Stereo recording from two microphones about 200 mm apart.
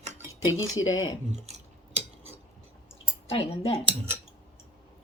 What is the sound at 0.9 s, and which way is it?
Speech, 80° left.